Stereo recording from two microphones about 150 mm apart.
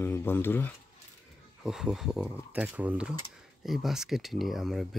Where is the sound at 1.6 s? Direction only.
5° right (ahead or behind).